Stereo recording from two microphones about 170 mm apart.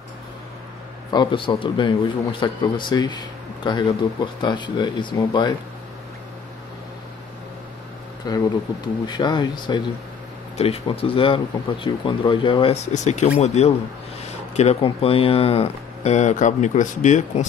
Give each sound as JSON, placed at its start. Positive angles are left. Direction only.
{"t": 1.1, "sound": "speech", "side_deg": 30}
{"t": 9.0, "sound": "speech", "side_deg": 25}
{"t": 10.6, "sound": "speech", "side_deg": 35}